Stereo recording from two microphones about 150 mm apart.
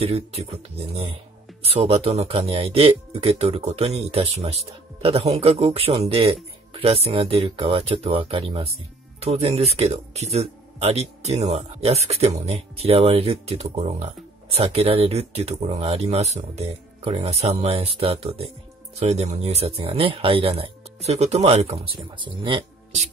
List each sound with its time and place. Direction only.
0.0 s speech: 45° right (ahead or behind)